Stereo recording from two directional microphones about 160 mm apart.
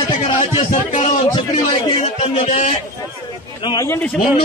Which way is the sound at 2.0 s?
40° left (ahead or behind).